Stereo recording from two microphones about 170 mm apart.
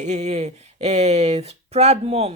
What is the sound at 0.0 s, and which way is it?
Speech, 45° right (ahead or behind).